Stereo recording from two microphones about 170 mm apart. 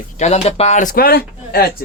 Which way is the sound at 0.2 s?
40° left (ahead or behind).